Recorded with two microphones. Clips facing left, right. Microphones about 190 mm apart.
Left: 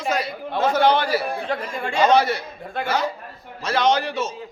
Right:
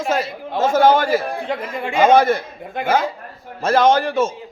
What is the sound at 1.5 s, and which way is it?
Speech, 20° right (ahead or behind).